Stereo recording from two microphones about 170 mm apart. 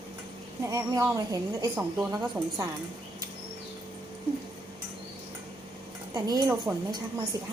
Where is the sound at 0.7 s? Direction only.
20° right (ahead or behind).